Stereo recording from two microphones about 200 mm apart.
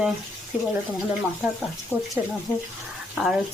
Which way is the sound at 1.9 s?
10° right (ahead or behind).